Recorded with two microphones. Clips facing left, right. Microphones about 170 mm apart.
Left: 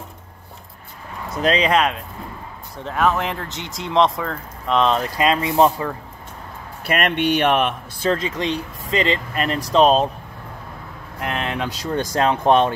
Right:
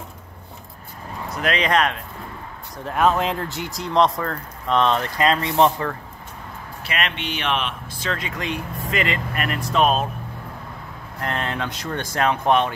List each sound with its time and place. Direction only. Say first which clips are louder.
1.3 s speech: left 5 dB; 25° left (ahead or behind)
2.8 s speech: right 1 dB; 15° right (ahead or behind)
3.5 s speech: left 2 dB; 5° right (ahead or behind)
5.1 s speech: left 1 dB; 10° left (ahead or behind)
6.9 s speech: left 8 dB; 50° left (ahead or behind)
8.0 s speech: left 7 dB; 30° left (ahead or behind)
11.1 s speech: left 1 dB; 10° left (ahead or behind)
12.1 s speech: left 2 dB; 25° left (ahead or behind)